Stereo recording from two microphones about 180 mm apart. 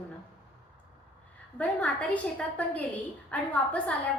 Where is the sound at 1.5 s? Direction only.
5° left (ahead or behind).